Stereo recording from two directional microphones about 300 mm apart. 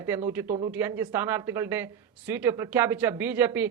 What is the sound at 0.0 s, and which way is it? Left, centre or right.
Speech, centre.